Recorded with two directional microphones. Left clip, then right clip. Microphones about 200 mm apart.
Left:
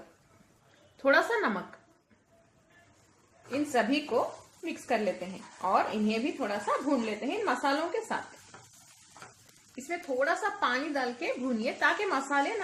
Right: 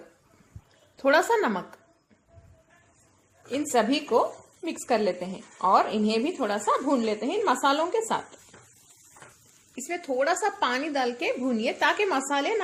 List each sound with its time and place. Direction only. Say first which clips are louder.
0.9 s a woman's voice: right 4 dB; 35° right (ahead or behind)
3.5 s a woman's voice: right 4 dB; 40° right (ahead or behind)
9.7 s a woman's voice: right 4 dB; 40° right (ahead or behind)